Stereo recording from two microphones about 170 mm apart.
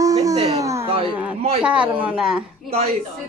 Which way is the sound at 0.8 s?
35° right (ahead or behind).